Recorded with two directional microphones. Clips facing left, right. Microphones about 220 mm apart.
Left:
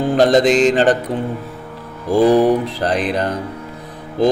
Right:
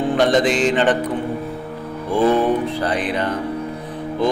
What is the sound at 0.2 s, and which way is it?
Mantra, 40° left (ahead or behind).